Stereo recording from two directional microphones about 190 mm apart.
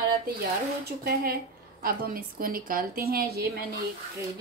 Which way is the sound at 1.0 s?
50° right (ahead or behind).